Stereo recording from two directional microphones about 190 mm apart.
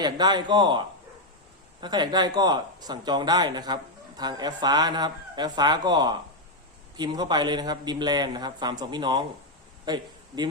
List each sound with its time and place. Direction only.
0.0 s speech: 20° right (ahead or behind)
1.8 s speech: 20° right (ahead or behind)